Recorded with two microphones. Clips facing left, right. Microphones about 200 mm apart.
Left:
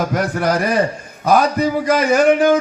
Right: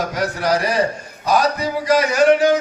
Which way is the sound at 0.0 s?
55° left (ahead or behind).